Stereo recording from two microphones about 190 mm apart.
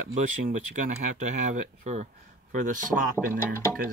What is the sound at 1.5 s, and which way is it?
Speech, 35° right (ahead or behind).